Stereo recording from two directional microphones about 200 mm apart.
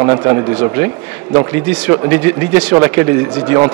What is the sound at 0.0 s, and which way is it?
A man's voice, 20° right (ahead or behind).